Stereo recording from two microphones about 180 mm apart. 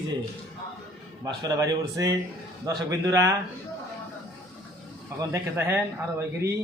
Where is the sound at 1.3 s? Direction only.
20° right (ahead or behind).